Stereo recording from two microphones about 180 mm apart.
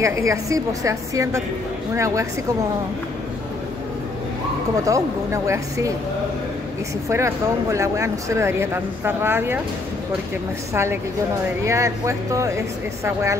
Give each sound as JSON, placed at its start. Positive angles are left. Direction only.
{"t": 0.0, "sound": "speech", "side_deg": -15}
{"t": 4.8, "sound": "speech", "side_deg": -15}
{"t": 7.1, "sound": "speech", "side_deg": -15}
{"t": 10.7, "sound": "speech", "side_deg": -15}